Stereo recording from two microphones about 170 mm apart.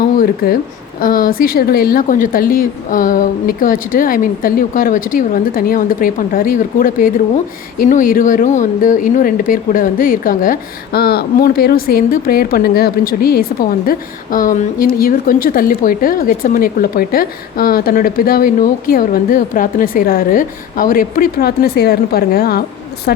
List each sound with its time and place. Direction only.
0.2 s a woman's voice: 60° left (ahead or behind)